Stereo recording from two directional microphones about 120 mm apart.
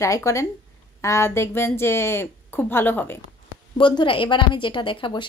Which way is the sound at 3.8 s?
45° left (ahead or behind).